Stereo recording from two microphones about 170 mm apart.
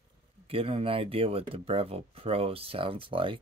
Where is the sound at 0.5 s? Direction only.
35° right (ahead or behind).